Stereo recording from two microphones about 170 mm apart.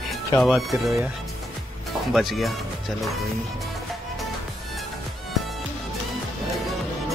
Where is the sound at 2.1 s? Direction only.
Centre (ahead or behind).